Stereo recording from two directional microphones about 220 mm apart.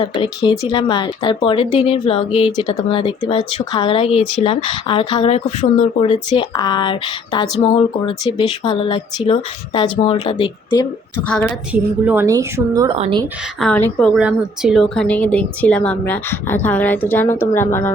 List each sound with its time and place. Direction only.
0.0 s speech: 25° left (ahead or behind)
11.3 s a woman's voice: 5° left (ahead or behind)
11.7 s a woman's voice: 10° right (ahead or behind); by 13.2 s 25° right (ahead or behind)
13.6 s a woman's voice: 5° left (ahead or behind)